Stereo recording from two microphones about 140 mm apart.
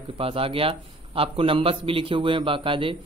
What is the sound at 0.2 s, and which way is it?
Speech, 40° right (ahead or behind).